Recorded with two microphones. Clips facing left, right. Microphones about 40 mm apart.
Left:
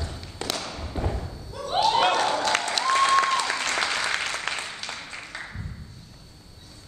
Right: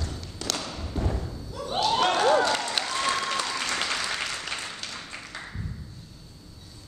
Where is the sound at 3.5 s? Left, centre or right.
Left.